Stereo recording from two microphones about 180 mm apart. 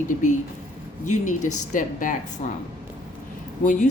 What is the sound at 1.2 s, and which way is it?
Speech, 45° left (ahead or behind).